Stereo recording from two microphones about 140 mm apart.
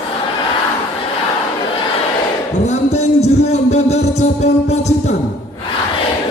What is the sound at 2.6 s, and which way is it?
Music, 50° left (ahead or behind).